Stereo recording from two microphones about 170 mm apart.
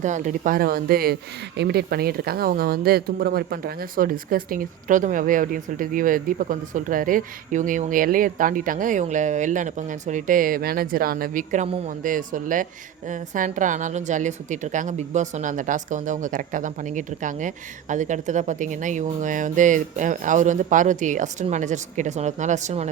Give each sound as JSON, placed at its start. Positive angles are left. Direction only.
{"t": 0.0, "sound": "speech", "side_deg": -45}